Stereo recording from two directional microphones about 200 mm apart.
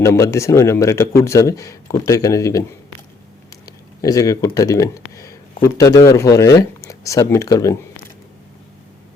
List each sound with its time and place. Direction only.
0.0 s a man's voice: 15° left (ahead or behind)
3.7 s a man's voice: 20° left (ahead or behind)